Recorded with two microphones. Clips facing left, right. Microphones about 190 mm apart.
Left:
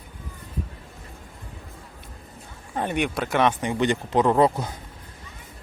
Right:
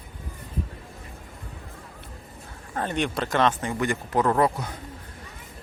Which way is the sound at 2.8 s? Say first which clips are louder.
Left 1 dB; 10° left (ahead or behind).